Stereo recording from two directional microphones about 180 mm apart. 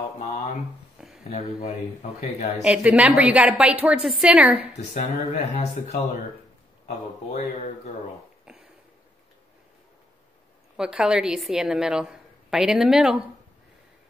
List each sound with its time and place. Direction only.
0.2 s speech: 40° left (ahead or behind)
1.0 s a sound: 5° right (ahead or behind)
2.1 s speech: 40° left (ahead or behind)
2.6 s a woman's voice: 5° right (ahead or behind)
4.9 s speech: 40° left (ahead or behind)
7.3 s speech: 45° left (ahead or behind)
8.5 s a sound: 5° right (ahead or behind)
10.8 s a woman's voice: 5° right (ahead or behind)